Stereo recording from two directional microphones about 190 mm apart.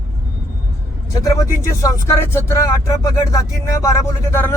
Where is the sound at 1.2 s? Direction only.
20° left (ahead or behind).